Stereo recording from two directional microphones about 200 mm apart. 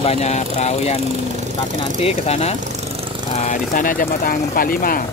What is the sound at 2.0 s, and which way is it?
Speech, 30° left (ahead or behind).